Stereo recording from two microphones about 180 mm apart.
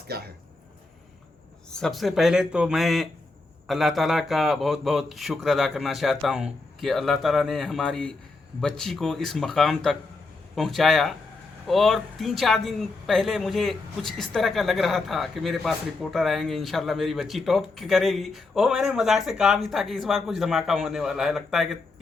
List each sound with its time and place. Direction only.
0.1 s speech: 60° right (ahead or behind)
1.7 s speech: centre (ahead or behind)